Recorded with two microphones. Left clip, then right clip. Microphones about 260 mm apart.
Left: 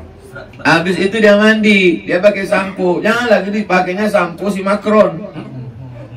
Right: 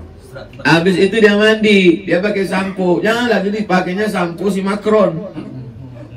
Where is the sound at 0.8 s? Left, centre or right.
Right.